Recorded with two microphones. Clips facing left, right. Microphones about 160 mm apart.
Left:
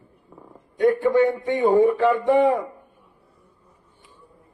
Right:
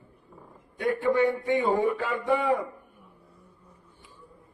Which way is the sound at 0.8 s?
40° left (ahead or behind).